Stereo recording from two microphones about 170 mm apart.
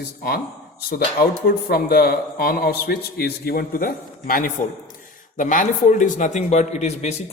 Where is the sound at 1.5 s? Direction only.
65° left (ahead or behind).